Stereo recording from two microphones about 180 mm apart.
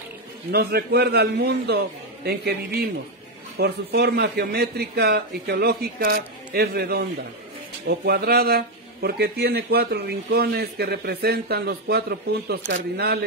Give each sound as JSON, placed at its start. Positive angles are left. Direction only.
{"t": 0.5, "sound": "speech", "side_deg": -60}